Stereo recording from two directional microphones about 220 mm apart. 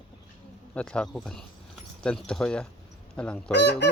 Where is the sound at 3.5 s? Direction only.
50° left (ahead or behind).